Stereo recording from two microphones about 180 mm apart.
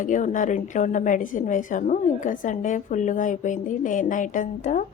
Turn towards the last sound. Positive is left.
turn(degrees=45)  # may be behind; listen again after turning